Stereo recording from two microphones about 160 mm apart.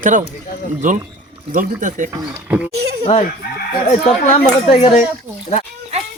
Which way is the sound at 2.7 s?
90° right.